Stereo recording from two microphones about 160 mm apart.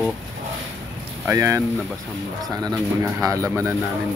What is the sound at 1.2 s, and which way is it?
Speech, 15° right (ahead or behind).